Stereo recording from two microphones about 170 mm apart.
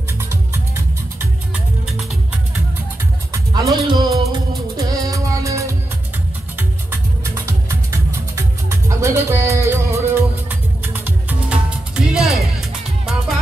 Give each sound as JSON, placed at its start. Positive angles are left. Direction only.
{"t": 0.2, "sound": "music", "side_deg": -15}
{"t": 3.8, "sound": "music", "side_deg": -30}
{"t": 7.4, "sound": "music", "side_deg": -15}